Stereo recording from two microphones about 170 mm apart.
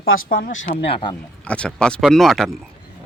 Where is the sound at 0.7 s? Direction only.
35° left (ahead or behind).